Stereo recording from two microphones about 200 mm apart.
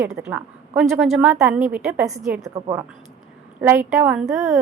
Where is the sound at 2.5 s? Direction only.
15° right (ahead or behind).